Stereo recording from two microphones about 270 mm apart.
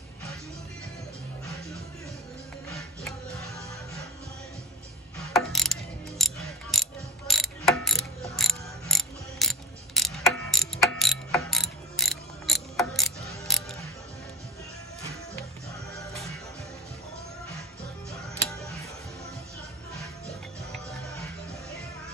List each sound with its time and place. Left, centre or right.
5.3 s mechanisms: centre